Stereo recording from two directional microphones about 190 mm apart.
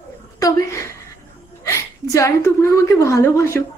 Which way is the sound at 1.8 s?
15° left (ahead or behind).